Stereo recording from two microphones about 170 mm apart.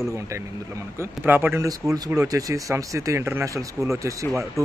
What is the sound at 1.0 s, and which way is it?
Speech, 10° right (ahead or behind).